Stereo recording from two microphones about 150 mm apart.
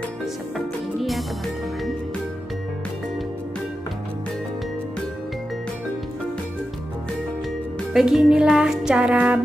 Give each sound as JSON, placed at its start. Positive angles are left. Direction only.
{"t": 7.9, "sound": "music", "side_deg": 0}